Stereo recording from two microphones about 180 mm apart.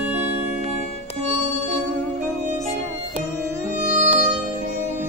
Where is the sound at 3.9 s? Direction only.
45° right (ahead or behind).